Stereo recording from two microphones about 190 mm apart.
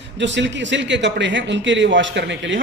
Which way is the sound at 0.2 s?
70° right (ahead or behind).